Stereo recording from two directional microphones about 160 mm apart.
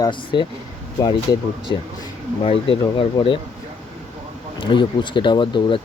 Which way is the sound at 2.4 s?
35° left (ahead or behind).